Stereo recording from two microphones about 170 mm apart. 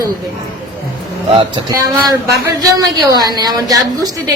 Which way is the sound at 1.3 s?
20° right (ahead or behind).